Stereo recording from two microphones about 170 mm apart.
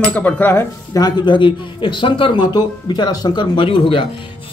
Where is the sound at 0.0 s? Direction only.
10° left (ahead or behind).